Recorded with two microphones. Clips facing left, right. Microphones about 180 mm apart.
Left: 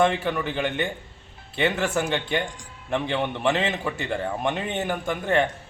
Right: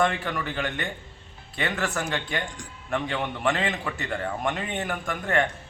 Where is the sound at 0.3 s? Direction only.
25° left (ahead or behind).